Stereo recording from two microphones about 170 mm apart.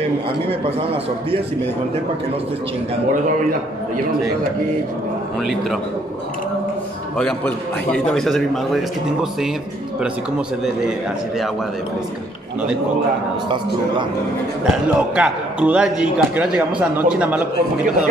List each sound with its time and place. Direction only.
7.2 s a man's voice: 5° left (ahead or behind)
14.7 s a man's voice: 5° right (ahead or behind)